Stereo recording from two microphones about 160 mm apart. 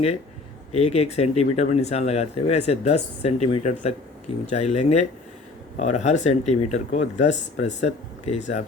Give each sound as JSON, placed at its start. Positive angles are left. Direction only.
{"t": 0.7, "sound": "speech", "side_deg": 40}